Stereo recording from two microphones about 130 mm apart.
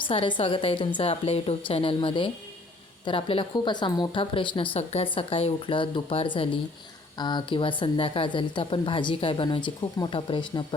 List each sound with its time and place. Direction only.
0.0 s a woman's voice: 40° left (ahead or behind)